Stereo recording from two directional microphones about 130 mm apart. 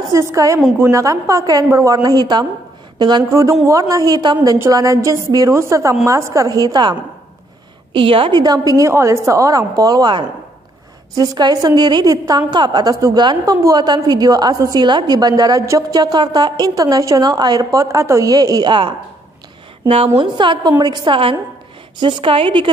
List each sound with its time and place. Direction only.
0.1 s a woman's voice: 25° right (ahead or behind)
0.6 s a woman's voice: 10° right (ahead or behind)
0.8 s a woman's voice: 25° right (ahead or behind)
7.9 s a woman's voice: 45° right (ahead or behind)
20.2 s a woman's voice: 35° right (ahead or behind)